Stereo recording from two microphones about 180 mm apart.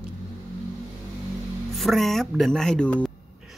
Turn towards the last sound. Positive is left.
turn(degrees=5)  # may be behind; listen again after turning